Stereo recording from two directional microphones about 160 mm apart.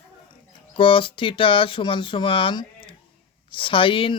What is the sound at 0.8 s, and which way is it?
Speech, 30° left (ahead or behind).